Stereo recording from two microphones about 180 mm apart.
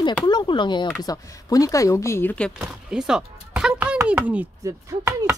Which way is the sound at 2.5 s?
5° right (ahead or behind).